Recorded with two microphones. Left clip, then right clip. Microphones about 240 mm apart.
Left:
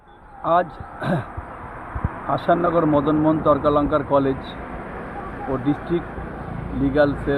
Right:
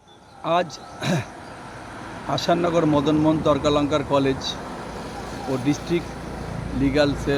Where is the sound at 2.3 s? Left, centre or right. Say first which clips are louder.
Left 2 dB; centre.